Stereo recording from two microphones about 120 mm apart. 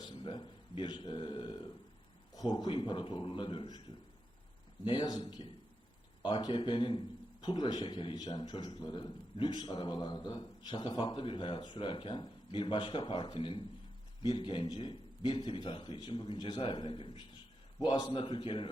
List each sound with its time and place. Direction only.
0.0 s a man's voice: 40° left (ahead or behind)